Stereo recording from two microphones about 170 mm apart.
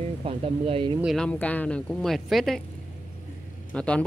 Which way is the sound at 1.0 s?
Centre (ahead or behind).